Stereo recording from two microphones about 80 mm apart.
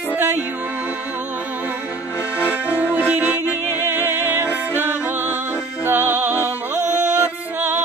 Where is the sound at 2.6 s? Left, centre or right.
Left.